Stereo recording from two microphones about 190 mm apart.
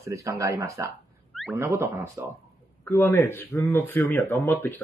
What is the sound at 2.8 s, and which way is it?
Speech, 10° left (ahead or behind).